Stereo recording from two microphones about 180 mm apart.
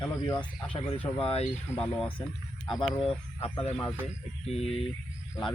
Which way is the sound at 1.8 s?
5° left (ahead or behind).